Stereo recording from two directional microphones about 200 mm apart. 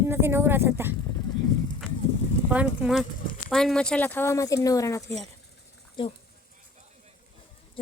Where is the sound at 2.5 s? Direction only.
5° right (ahead or behind); by 5.1 s 15° left (ahead or behind).